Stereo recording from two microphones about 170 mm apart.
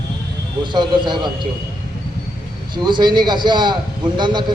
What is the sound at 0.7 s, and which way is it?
Speech, 25° right (ahead or behind).